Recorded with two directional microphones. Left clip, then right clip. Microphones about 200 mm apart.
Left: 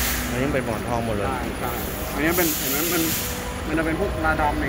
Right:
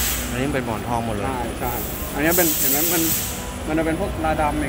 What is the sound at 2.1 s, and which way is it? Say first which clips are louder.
Speech: right 3 dB; 65° right (ahead or behind).